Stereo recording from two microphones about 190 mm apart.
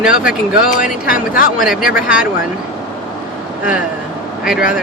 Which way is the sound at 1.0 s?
50° left (ahead or behind).